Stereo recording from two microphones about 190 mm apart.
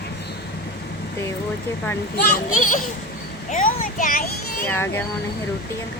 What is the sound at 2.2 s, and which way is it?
Speech, 45° left (ahead or behind).